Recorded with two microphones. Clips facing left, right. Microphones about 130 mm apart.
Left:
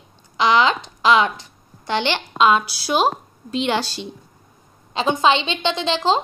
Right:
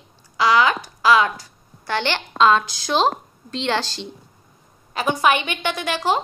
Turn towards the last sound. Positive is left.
turn(degrees=20)  # may be behind; listen again after turning